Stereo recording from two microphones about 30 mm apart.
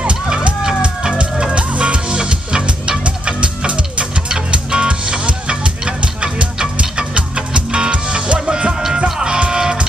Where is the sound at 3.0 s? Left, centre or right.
Right.